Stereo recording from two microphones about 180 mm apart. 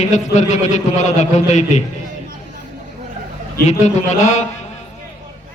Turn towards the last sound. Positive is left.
turn(degrees=40)  # may be behind; listen again after turning